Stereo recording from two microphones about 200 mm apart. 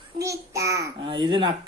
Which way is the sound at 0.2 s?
15° right (ahead or behind).